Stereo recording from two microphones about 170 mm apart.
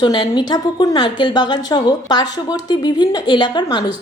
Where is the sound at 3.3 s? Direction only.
25° left (ahead or behind).